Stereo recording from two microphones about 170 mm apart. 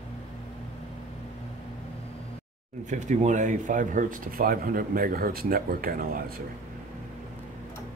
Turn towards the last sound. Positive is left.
turn(degrees=-55)  # may be behind; listen again after turning